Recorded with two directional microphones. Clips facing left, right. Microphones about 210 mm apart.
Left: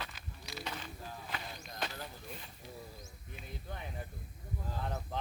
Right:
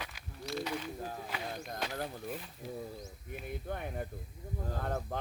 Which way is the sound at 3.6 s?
55° right (ahead or behind).